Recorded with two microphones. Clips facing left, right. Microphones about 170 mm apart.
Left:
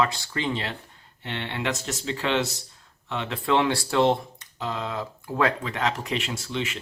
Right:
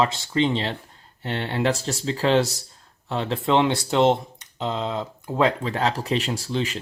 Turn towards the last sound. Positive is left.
turn(degrees=-35)  # may be behind; listen again after turning